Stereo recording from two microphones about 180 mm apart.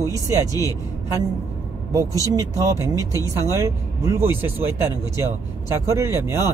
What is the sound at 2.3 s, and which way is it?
Speech, 20° right (ahead or behind).